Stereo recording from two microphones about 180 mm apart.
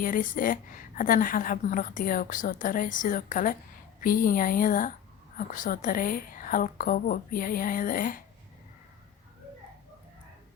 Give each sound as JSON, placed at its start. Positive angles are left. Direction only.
{"t": 0.0, "sound": "a woman's voice", "side_deg": 50}